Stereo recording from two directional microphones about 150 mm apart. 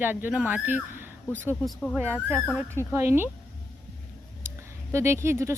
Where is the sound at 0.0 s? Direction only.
10° right (ahead or behind).